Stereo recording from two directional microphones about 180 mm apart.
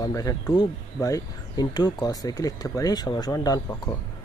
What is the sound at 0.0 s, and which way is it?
Speech, 20° left (ahead or behind).